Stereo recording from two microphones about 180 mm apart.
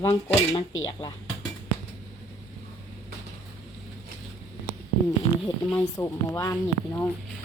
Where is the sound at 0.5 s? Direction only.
25° left (ahead or behind).